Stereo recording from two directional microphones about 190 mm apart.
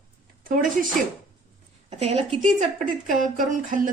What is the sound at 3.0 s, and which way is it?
Speech, 45° right (ahead or behind).